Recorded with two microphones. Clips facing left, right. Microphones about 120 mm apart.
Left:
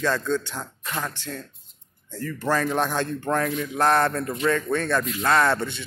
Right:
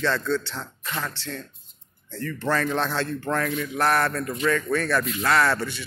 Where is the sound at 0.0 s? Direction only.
15° left (ahead or behind).